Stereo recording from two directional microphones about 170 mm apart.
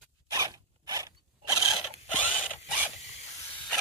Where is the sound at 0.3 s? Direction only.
20° right (ahead or behind).